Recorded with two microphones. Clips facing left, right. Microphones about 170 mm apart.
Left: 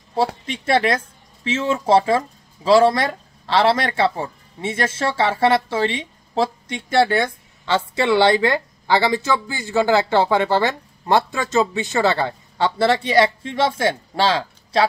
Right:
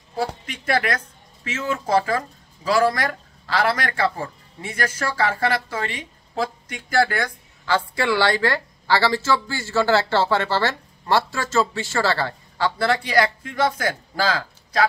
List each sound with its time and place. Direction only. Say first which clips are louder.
0.5 s speech: left 3 dB; 25° left (ahead or behind)